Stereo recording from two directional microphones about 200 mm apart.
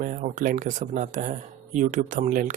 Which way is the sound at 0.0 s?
40° right (ahead or behind).